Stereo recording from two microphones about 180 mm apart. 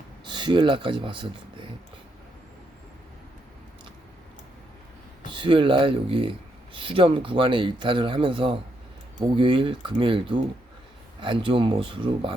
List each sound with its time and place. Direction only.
0.3 s speech: 25° right (ahead or behind)
5.3 s speech: 25° right (ahead or behind)